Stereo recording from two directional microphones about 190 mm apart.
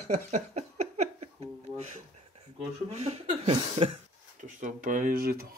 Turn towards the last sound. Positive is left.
turn(degrees=-50)  # may be behind; listen again after turning